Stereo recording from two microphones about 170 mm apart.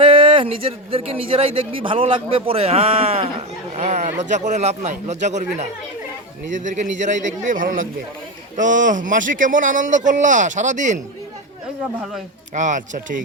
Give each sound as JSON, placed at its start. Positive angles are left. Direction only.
{"t": 0.0, "sound": "a man's voice", "side_deg": -30}
{"t": 12.5, "sound": "speech", "side_deg": -45}